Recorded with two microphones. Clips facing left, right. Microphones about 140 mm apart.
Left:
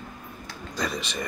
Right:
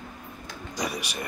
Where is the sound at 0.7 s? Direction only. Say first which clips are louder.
Left 1 dB; 10° right (ahead or behind).